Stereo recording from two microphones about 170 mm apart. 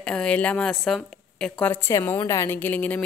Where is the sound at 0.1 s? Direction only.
5° left (ahead or behind).